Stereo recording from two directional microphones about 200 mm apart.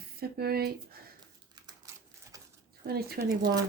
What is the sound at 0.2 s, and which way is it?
Speech, 50° right (ahead or behind).